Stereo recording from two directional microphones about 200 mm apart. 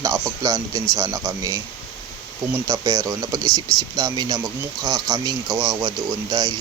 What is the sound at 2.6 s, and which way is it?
Speech, 15° right (ahead or behind).